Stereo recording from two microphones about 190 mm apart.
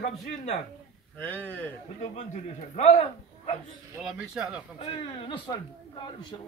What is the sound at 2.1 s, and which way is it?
A man's voice, 35° left (ahead or behind).